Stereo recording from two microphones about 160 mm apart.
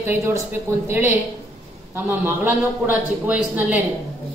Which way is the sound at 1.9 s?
15° right (ahead or behind).